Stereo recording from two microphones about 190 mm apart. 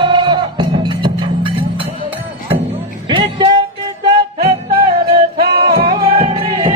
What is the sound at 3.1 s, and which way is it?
Music, 25° right (ahead or behind).